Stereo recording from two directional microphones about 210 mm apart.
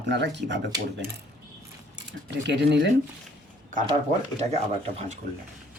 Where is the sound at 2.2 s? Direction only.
55° right (ahead or behind).